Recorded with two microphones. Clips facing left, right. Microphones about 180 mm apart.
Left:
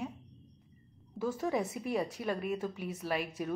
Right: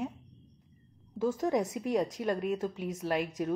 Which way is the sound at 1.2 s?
15° right (ahead or behind).